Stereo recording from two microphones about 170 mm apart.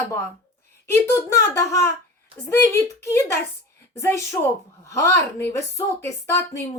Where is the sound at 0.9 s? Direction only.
15° left (ahead or behind).